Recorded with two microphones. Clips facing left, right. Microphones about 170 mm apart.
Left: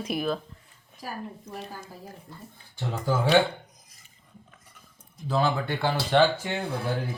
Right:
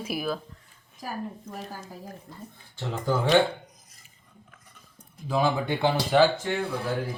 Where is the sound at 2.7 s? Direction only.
10° left (ahead or behind).